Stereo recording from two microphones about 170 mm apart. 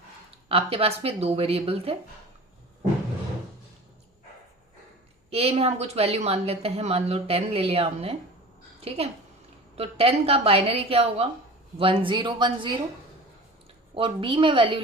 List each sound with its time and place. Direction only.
0.4 s speech: 35° right (ahead or behind)
5.3 s speech: 35° right (ahead or behind)
13.9 s speech: 30° right (ahead or behind)